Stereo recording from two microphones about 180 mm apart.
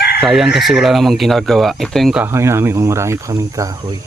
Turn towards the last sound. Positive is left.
turn(degrees=-20)  # may be behind; listen again after turning